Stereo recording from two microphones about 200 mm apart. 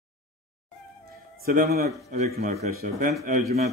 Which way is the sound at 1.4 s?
45° right (ahead or behind).